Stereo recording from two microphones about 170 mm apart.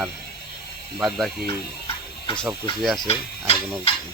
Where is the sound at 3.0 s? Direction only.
35° left (ahead or behind).